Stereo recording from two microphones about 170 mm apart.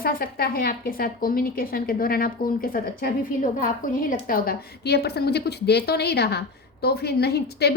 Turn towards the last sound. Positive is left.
turn(degrees=70)  # may be behind; listen again after turning